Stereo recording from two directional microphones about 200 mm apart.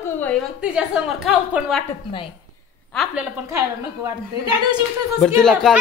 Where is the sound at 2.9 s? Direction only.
Centre (ahead or behind).